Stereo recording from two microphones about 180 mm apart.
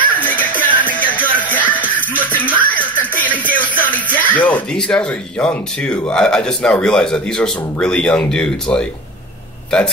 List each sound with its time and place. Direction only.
0.0 s music: 10° left (ahead or behind)
1.0 s a sound: 10° left (ahead or behind)
1.5 s speech: 10° left (ahead or behind)